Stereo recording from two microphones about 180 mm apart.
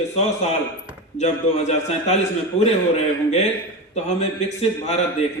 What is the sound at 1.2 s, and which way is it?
Speech, 40° left (ahead or behind).